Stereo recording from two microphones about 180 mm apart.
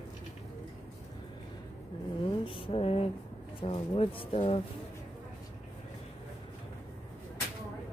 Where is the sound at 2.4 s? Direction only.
30° left (ahead or behind).